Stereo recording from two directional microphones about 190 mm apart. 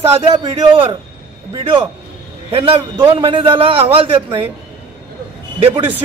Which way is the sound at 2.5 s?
30° right (ahead or behind).